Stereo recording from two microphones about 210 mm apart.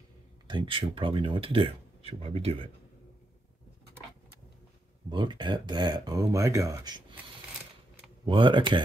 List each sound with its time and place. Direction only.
0.5 s speech: 25° right (ahead or behind)
5.1 s speech: 20° right (ahead or behind)
8.3 s speech: 25° right (ahead or behind)